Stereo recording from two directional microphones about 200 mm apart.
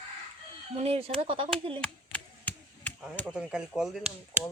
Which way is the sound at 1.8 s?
10° left (ahead or behind).